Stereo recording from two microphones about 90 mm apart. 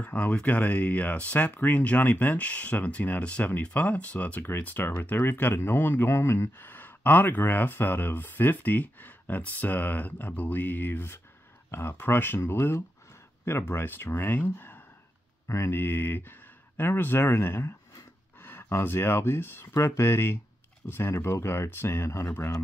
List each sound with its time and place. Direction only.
0.0 s speech: 15° left (ahead or behind)